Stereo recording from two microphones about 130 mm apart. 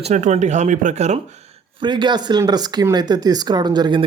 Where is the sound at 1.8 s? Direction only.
35° right (ahead or behind).